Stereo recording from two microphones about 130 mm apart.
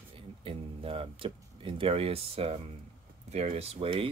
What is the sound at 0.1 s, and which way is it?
Speech, 45° right (ahead or behind).